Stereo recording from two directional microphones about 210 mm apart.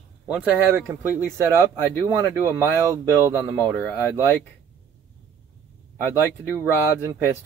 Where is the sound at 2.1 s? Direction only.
15° right (ahead or behind).